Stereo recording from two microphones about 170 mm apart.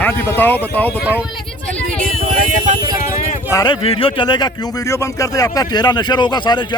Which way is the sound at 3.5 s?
25° left (ahead or behind).